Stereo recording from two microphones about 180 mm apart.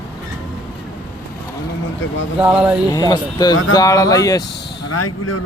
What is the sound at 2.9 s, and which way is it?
Speech, 20° left (ahead or behind).